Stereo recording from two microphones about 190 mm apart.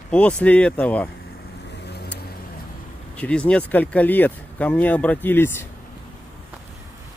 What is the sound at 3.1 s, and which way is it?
Speech, 5° left (ahead or behind).